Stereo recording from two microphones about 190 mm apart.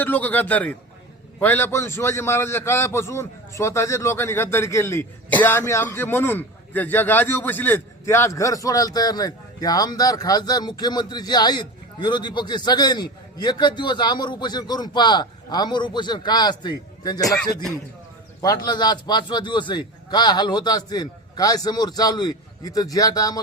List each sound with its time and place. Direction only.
0.0 s a man's voice: 10° left (ahead or behind)
17.3 s speech: 5° left (ahead or behind)
18.4 s a man's voice: 20° left (ahead or behind)